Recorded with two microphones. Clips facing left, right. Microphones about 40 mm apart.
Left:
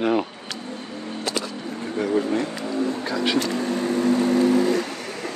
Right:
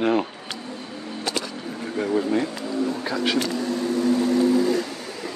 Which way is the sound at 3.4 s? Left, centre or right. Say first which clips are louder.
Left 1 dB; left.